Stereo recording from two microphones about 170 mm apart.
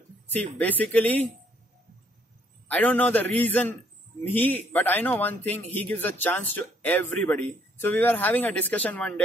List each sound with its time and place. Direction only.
0.6 s a man's voice: 10° left (ahead or behind)
2.7 s a man's voice: 10° left (ahead or behind)